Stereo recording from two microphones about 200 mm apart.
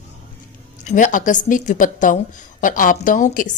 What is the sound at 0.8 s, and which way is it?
A woman's voice, 40° left (ahead or behind).